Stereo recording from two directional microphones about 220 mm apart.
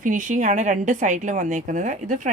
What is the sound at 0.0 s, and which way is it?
A woman's voice, 35° right (ahead or behind).